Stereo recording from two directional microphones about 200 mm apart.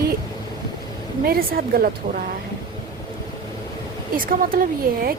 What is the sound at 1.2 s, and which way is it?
Speech, 50° right (ahead or behind).